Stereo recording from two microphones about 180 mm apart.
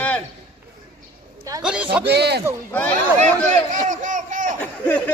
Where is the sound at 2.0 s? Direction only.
65° right (ahead or behind).